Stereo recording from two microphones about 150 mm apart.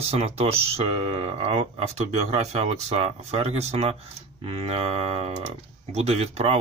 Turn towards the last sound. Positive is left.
turn(degrees=-45)  # may be behind; listen again after turning